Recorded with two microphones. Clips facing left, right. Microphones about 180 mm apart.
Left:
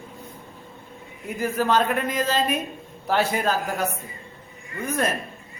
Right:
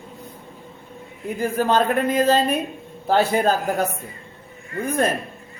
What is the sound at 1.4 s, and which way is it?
A woman's voice, 30° right (ahead or behind).